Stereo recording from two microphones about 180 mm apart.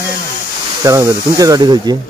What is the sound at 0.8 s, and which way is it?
Speech, 20° right (ahead or behind).